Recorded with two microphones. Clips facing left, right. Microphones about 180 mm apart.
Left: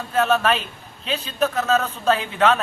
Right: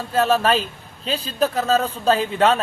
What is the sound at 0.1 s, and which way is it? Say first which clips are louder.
A man's voice: right 1 dB; 30° right (ahead or behind).